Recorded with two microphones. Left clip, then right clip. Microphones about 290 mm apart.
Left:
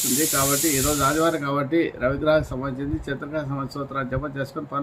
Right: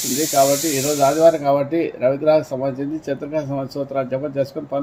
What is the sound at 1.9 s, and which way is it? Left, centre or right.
Speech, centre.